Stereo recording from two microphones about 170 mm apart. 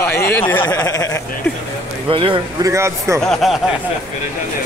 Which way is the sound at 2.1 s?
30° right (ahead or behind).